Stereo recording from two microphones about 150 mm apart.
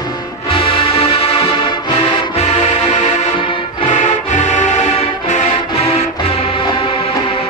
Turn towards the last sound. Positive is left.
turn(degrees=40)  # may be behind; listen again after turning